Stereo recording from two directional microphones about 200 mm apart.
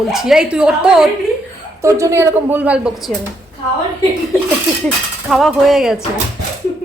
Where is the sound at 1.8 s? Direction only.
15° right (ahead or behind).